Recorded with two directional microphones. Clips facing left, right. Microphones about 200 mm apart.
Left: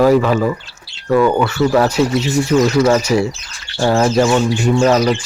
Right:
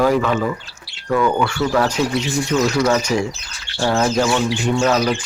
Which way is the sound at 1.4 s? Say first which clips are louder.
Left 4 dB; 5° left (ahead or behind).